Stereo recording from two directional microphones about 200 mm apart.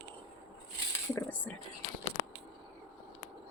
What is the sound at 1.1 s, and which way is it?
Speech, 10° left (ahead or behind).